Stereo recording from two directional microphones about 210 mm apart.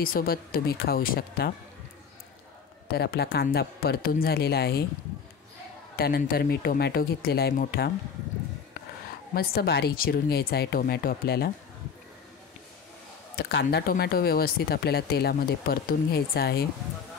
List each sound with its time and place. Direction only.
0.0 s speech: 45° left (ahead or behind)
2.9 s speech: 50° left (ahead or behind)
5.9 s speech: 45° left (ahead or behind)
9.3 s speech: 45° left (ahead or behind)
13.4 s speech: 50° left (ahead or behind)